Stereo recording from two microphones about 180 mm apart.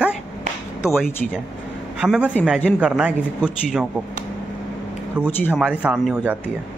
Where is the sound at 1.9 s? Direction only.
5° right (ahead or behind).